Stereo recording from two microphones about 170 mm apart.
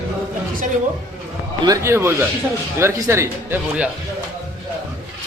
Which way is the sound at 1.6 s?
15° right (ahead or behind).